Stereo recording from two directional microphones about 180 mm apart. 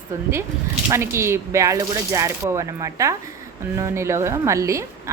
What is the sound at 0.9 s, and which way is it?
A woman's voice, 15° right (ahead or behind).